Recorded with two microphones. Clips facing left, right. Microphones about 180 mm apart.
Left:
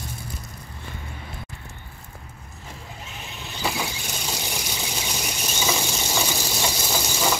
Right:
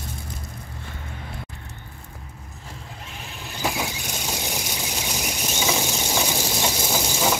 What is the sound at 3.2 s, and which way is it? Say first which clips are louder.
Squeal: right 3 dB; centre (ahead or behind).